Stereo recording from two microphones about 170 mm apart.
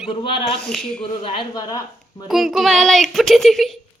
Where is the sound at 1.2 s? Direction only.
25° left (ahead or behind).